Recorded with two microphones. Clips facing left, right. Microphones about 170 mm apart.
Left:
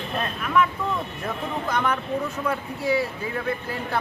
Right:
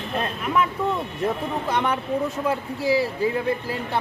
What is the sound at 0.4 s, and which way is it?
A man's voice, 25° right (ahead or behind).